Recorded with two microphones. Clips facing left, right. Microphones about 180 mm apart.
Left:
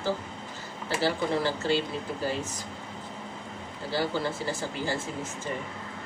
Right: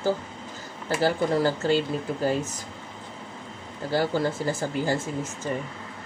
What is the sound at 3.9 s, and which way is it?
Speech, 45° right (ahead or behind).